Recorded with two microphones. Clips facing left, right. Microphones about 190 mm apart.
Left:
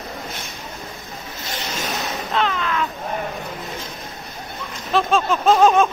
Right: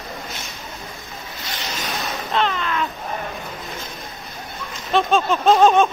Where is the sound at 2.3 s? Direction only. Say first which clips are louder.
Even; centre (ahead or behind).